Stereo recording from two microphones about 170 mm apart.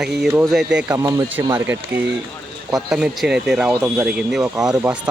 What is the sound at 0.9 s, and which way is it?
Speech, 15° right (ahead or behind).